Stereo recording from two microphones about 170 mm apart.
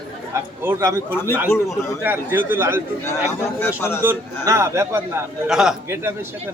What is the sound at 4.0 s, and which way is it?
A man's voice, 15° right (ahead or behind).